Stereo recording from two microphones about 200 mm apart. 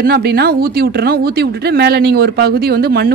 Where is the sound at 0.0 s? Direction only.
50° right (ahead or behind).